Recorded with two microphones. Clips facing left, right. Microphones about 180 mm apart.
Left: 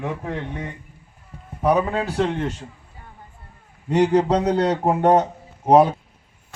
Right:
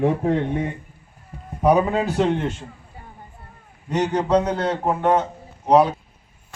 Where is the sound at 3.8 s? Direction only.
30° left (ahead or behind).